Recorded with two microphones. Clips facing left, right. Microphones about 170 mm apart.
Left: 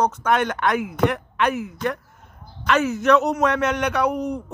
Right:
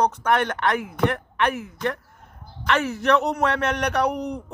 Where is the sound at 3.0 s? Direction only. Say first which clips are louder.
Left 3 dB; 60° right (ahead or behind).